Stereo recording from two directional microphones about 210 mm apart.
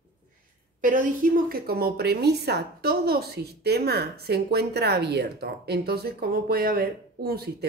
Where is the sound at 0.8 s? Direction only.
40° right (ahead or behind).